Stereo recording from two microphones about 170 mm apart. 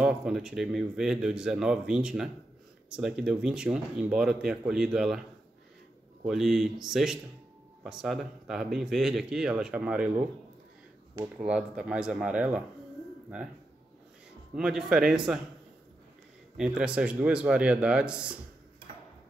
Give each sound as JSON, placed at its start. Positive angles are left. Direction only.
{"t": 0.0, "sound": "speech", "side_deg": -5}
{"t": 6.2, "sound": "speech", "side_deg": 0}
{"t": 11.3, "sound": "speech", "side_deg": -5}
{"t": 14.5, "sound": "speech", "side_deg": -5}
{"t": 16.5, "sound": "speech", "side_deg": -5}